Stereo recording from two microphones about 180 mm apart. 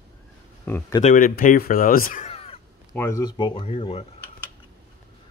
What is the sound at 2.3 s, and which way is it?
Crow, 35° left (ahead or behind).